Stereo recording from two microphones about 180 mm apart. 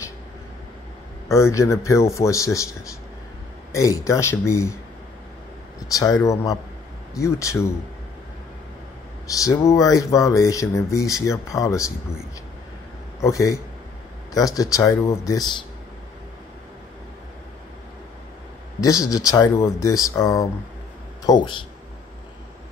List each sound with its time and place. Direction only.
1.3 s speech: 15° left (ahead or behind)
3.7 s speech: 15° left (ahead or behind)
5.9 s speech: 20° left (ahead or behind)
9.4 s speech: 15° left (ahead or behind)
13.2 s speech: 20° left (ahead or behind)
18.8 s speech: 20° left (ahead or behind)